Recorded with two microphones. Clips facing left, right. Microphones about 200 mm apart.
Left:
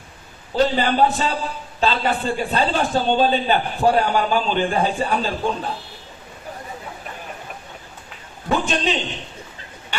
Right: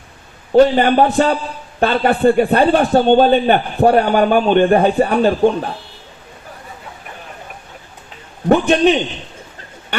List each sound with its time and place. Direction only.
0.5 s a man's voice: 60° right (ahead or behind)
8.4 s a man's voice: 60° right (ahead or behind)